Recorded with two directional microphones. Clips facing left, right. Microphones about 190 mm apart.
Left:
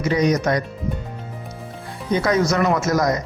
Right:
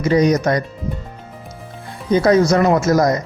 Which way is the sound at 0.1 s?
35° right (ahead or behind).